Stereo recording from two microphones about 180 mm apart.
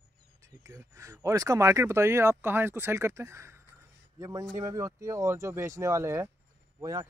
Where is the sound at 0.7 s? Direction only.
15° right (ahead or behind).